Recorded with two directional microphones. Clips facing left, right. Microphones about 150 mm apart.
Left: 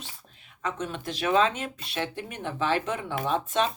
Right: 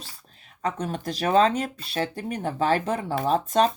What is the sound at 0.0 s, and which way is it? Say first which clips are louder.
Speech: even; 40° right (ahead or behind).